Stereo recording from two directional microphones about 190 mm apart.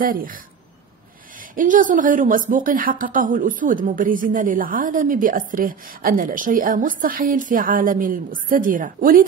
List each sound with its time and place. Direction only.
0.0 s a woman's voice: 45° right (ahead or behind)
1.5 s a woman's voice: 45° right (ahead or behind)